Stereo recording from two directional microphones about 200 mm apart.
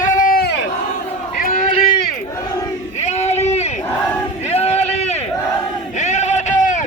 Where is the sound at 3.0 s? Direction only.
35° left (ahead or behind).